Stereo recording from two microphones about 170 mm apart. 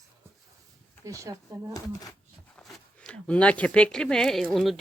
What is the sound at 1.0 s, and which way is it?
Speech, 20° right (ahead or behind).